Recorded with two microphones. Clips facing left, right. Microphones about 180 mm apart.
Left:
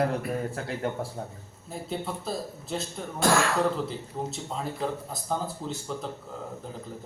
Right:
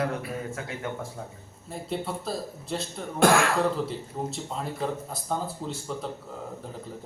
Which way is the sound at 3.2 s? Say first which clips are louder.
Right 4 dB; 60° right (ahead or behind).